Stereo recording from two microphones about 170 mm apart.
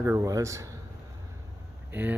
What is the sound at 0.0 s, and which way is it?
Speech, 15° right (ahead or behind).